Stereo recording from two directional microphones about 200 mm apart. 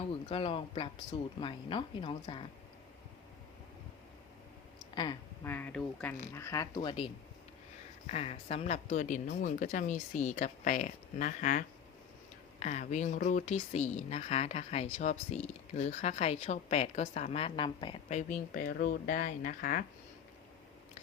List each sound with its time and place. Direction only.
0.1 s speech: 25° left (ahead or behind)
5.4 s speech: 10° left (ahead or behind)
8.0 s speech: 30° left (ahead or behind)
18.2 s speech: 40° left (ahead or behind)